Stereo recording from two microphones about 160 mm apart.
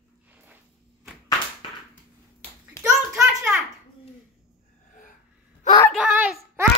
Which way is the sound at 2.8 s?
5° right (ahead or behind).